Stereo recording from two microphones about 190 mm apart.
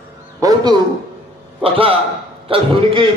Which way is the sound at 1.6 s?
30° right (ahead or behind).